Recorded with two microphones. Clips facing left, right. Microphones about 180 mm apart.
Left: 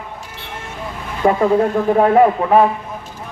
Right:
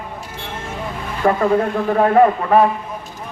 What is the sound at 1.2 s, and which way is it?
Speech, 20° left (ahead or behind).